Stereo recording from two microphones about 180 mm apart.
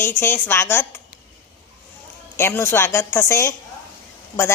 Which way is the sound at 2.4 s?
15° left (ahead or behind).